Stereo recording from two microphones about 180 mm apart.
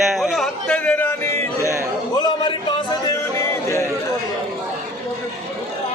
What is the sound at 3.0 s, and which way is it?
Music, 15° left (ahead or behind).